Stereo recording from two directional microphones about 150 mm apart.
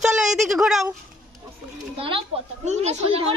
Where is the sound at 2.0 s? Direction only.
35° right (ahead or behind).